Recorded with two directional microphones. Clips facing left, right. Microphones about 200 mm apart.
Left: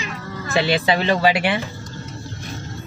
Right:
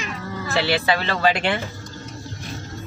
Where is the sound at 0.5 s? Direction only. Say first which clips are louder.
Left 3 dB; 20° left (ahead or behind).